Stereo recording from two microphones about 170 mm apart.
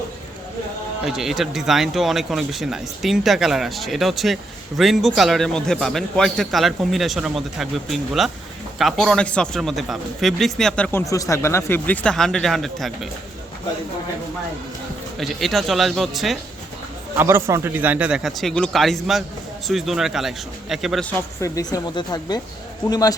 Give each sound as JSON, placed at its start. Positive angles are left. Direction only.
{"t": 1.0, "sound": "a man's voice", "side_deg": 0}
{"t": 11.0, "sound": "a man's voice", "side_deg": 20}
{"t": 15.2, "sound": "a man's voice", "side_deg": 0}
{"t": 17.2, "sound": "a man's voice", "side_deg": -15}